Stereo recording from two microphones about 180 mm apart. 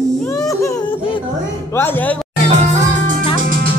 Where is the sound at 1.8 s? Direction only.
10° left (ahead or behind).